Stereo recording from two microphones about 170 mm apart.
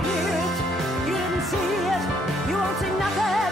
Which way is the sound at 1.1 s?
Centre (ahead or behind).